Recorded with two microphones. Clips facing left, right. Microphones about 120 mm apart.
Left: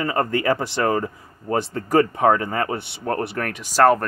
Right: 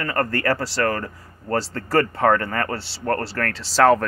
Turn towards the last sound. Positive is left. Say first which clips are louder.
# even
turn(degrees=15)  # may be behind; listen again after turning